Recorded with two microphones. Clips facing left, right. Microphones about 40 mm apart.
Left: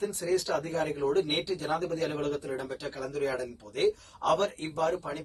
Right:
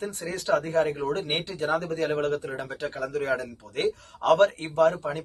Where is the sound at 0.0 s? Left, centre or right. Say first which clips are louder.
Left 2 dB; right.